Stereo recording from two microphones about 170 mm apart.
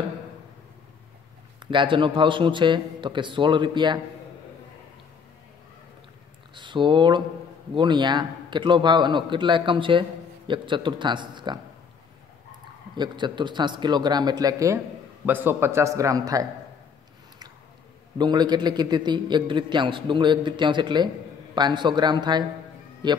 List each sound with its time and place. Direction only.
1.7 s a man's voice: 30° right (ahead or behind)
6.5 s a man's voice: 30° right (ahead or behind)
12.9 s a man's voice: 25° right (ahead or behind)
18.1 s a man's voice: 25° right (ahead or behind)